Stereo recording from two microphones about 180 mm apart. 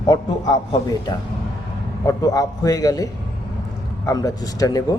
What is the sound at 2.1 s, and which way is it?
A man's voice, 20° left (ahead or behind).